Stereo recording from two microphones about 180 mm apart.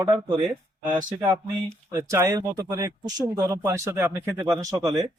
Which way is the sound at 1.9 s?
15° right (ahead or behind).